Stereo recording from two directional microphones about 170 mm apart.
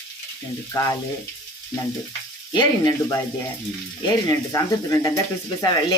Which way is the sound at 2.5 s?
25° left (ahead or behind).